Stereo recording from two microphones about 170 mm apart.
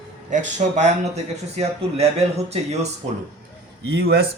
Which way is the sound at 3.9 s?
70° right (ahead or behind).